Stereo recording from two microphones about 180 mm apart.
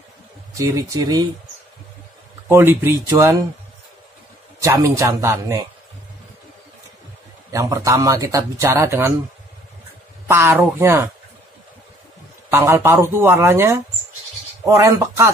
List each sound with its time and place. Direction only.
0.6 s speech: 20° right (ahead or behind)
2.4 s speech: 10° right (ahead or behind)
4.6 s speech: 20° right (ahead or behind)
7.5 s speech: 15° right (ahead or behind)
10.2 s a man's voice: 15° right (ahead or behind)
12.4 s speech: 15° right (ahead or behind)